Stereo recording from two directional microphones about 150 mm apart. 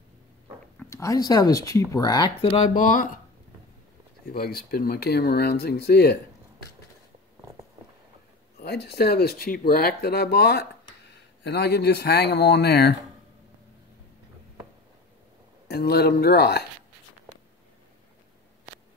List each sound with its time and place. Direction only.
0.8 s speech: 20° left (ahead or behind); by 2.7 s 40° left (ahead or behind)
2.7 s speech: 60° left (ahead or behind)
4.3 s speech: 90° left
8.5 s speech: 90° left
15.7 s speech: 90° left